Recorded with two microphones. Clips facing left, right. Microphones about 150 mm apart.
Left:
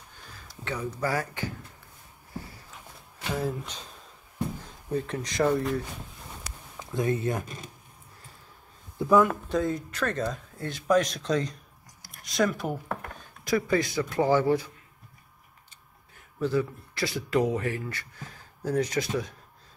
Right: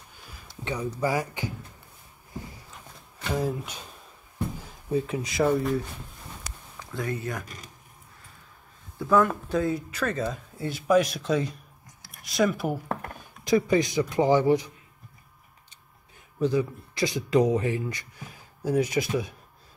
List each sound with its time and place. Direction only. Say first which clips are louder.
0.3 s speech: right 2 dB; 15° right (ahead or behind)
3.3 s speech: right 3 dB; 10° right (ahead or behind)
6.8 s speech: left 4 dB; 20° left (ahead or behind)
8.9 s a sound: left 1 dB; 20° left (ahead or behind)
9.2 s speech: even; centre (ahead or behind)
13.2 s speech: right 4 dB; 20° right (ahead or behind)
16.3 s speech: right 2 dB; 15° right (ahead or behind)